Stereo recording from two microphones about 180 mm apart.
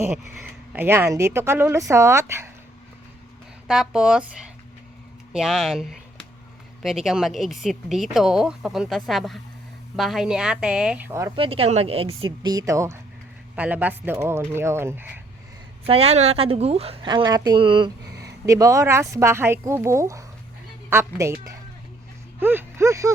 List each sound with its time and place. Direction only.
0.7 s speech: 10° right (ahead or behind)
3.7 s speech: 5° right (ahead or behind)
11.3 s speech: 30° right (ahead or behind); by 15.2 s 10° right (ahead or behind)
15.9 s a woman's voice: 35° right (ahead or behind); by 23.1 s 15° right (ahead or behind)